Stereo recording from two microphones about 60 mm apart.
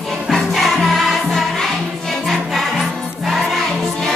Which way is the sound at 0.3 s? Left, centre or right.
Centre.